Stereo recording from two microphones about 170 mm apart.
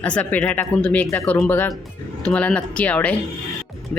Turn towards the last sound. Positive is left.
turn(degrees=10)  # may be behind; listen again after turning